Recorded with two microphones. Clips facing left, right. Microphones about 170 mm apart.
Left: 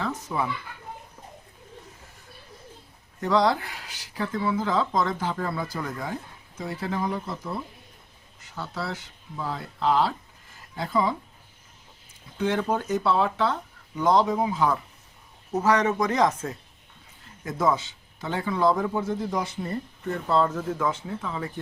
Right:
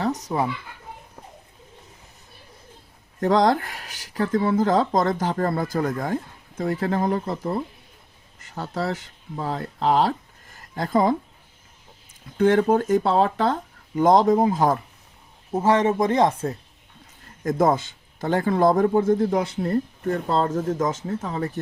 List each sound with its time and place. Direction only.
0.0 s a child's voice: 40° right (ahead or behind)
3.2 s speech: 50° right (ahead or behind)
12.4 s speech: 50° right (ahead or behind)
15.5 s speech: 25° right (ahead or behind)
17.4 s speech: 45° right (ahead or behind)
20.6 s speech: 45° right (ahead or behind)